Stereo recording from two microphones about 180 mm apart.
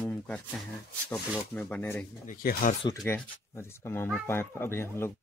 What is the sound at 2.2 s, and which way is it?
Speech, 50° left (ahead or behind).